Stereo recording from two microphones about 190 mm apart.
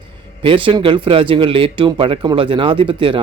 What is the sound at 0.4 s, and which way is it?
Speech, 25° right (ahead or behind).